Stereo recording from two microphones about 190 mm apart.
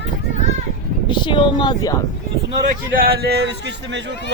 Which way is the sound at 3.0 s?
55° right (ahead or behind).